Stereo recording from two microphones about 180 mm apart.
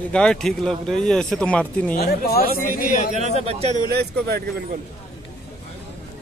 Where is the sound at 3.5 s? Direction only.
35° right (ahead or behind).